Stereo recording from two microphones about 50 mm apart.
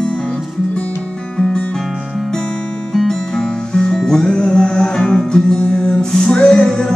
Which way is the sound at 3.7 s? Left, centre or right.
Centre.